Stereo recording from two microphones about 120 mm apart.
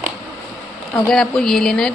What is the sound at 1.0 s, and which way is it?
Speech, 5° left (ahead or behind).